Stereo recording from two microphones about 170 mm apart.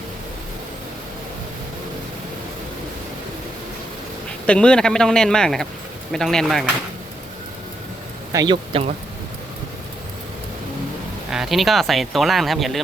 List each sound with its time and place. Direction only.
4.4 s speech: 5° left (ahead or behind)
8.3 s a man's voice: 20° right (ahead or behind)
8.7 s speech: 30° right (ahead or behind)
11.3 s speech: centre (ahead or behind)